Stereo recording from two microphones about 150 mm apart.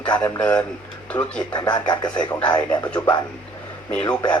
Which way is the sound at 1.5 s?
30° left (ahead or behind).